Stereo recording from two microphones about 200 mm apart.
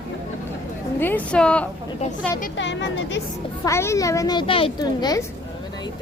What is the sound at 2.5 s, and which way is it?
Speech, 65° left (ahead or behind).